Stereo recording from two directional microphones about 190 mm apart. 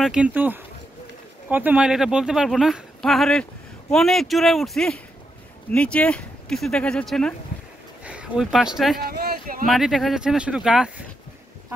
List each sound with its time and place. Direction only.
0.0 s speech: 5° right (ahead or behind)
9.0 s speech: 55° right (ahead or behind)
9.7 s speech: centre (ahead or behind)